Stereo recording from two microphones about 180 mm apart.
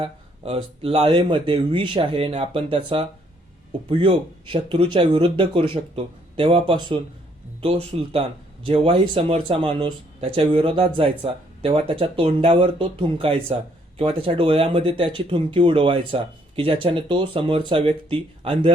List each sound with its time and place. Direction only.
0.0 s speech: 30° right (ahead or behind)